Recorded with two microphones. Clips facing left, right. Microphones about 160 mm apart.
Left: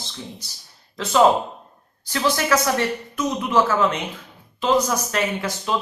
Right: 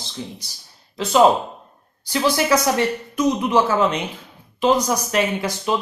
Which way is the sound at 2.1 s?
15° right (ahead or behind).